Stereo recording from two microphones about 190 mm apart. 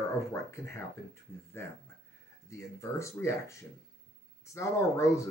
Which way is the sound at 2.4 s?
15° left (ahead or behind).